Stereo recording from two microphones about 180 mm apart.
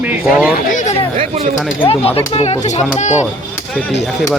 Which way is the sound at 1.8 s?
30° left (ahead or behind).